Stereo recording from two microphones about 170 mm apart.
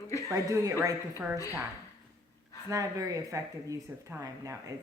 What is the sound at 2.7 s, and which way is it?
Speech, 20° right (ahead or behind).